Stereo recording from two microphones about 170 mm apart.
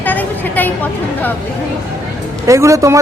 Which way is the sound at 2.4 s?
15° right (ahead or behind).